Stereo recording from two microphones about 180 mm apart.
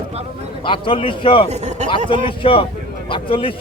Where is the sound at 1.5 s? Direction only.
40° right (ahead or behind).